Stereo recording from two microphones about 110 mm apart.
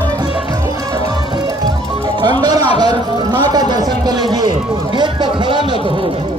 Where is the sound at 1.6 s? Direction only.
40° right (ahead or behind).